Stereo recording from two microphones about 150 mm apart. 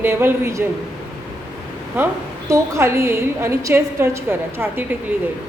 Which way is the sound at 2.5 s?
20° right (ahead or behind).